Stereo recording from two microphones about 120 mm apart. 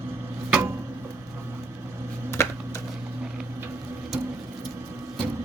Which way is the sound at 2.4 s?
20° left (ahead or behind).